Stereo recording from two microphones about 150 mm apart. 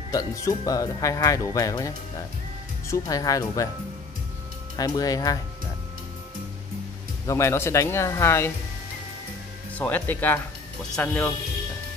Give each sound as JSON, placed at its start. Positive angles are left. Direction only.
{"t": 0.1, "sound": "speech", "side_deg": 20}
{"t": 4.7, "sound": "speech", "side_deg": 25}
{"t": 7.2, "sound": "speech", "side_deg": 20}
{"t": 9.8, "sound": "speech", "side_deg": 10}